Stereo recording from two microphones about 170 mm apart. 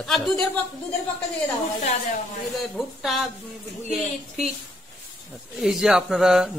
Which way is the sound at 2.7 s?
Centre (ahead or behind).